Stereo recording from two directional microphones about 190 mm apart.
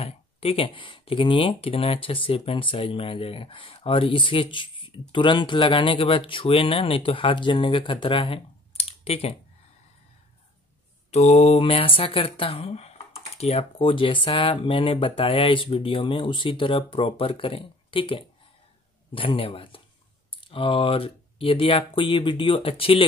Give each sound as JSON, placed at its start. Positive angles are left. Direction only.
{"t": 0.0, "sound": "speech", "side_deg": 30}
{"t": 11.1, "sound": "speech", "side_deg": 35}